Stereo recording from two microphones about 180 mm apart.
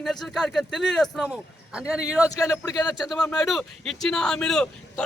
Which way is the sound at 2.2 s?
20° left (ahead or behind).